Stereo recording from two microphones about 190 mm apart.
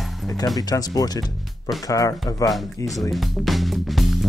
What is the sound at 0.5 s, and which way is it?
Speech, 20° left (ahead or behind).